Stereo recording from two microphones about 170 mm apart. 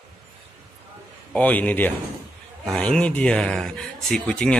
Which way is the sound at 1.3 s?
10° left (ahead or behind).